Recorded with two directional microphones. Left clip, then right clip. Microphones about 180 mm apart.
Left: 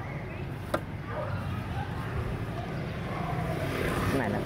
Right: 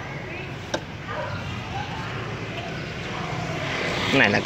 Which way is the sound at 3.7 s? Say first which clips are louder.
Right 7 dB; 50° left (ahead or behind).